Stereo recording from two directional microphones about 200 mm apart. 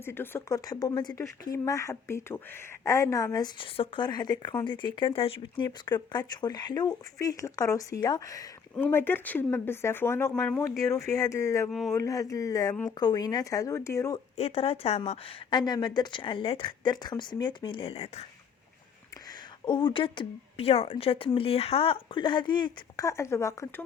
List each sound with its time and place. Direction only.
0.0 s speech: 10° left (ahead or behind)
14.3 s speech: 30° left (ahead or behind)
19.6 s speech: 20° left (ahead or behind)